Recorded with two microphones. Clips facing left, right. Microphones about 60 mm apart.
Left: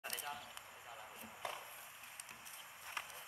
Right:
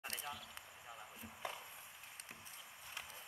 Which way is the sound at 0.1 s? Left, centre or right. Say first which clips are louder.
Left 1 dB; left.